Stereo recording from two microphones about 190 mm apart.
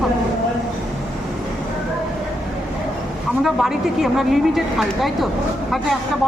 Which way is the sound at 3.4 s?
Centre (ahead or behind).